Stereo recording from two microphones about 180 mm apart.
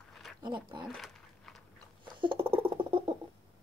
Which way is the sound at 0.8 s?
Centre (ahead or behind).